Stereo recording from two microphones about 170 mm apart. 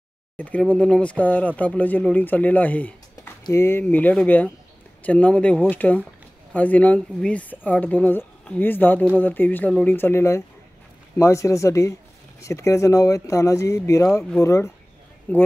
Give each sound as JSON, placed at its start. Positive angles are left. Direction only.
{"t": 0.4, "sound": "speech", "side_deg": 10}